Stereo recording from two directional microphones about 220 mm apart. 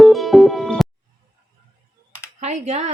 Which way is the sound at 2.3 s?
30° right (ahead or behind).